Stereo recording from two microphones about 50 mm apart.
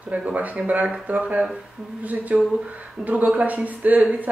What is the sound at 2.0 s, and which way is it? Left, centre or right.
Speech, right.